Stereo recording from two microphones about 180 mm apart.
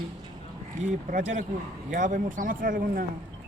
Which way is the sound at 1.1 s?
45° right (ahead or behind).